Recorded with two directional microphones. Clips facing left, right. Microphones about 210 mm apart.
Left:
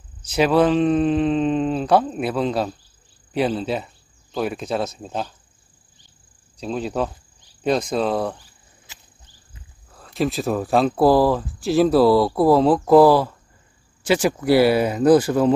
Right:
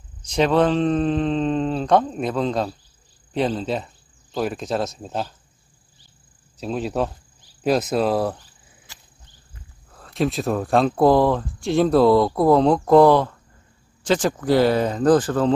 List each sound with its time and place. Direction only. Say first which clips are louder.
0.3 s speech: left 1 dB; 5° left (ahead or behind)
6.5 s speech: even; 5° right (ahead or behind)
9.8 s speech: even; centre (ahead or behind)